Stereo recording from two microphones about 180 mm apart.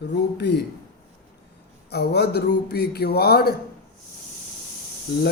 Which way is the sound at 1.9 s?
65° left (ahead or behind).